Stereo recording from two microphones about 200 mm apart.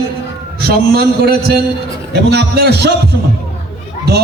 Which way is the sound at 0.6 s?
50° right (ahead or behind).